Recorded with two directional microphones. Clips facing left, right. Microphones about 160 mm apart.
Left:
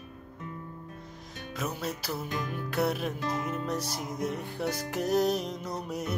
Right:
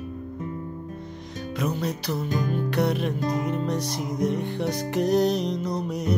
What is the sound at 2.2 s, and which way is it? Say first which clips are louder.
Music: right 8 dB; 35° right (ahead or behind).